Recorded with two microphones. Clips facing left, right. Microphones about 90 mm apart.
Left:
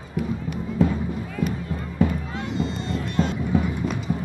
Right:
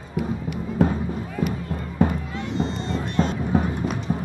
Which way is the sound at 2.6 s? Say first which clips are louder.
Right 2 dB; 25° right (ahead or behind).